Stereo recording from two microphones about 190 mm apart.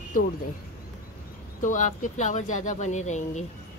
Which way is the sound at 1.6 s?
40° left (ahead or behind).